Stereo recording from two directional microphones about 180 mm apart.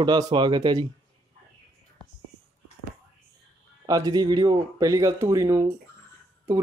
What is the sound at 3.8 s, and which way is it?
Speech, 20° right (ahead or behind).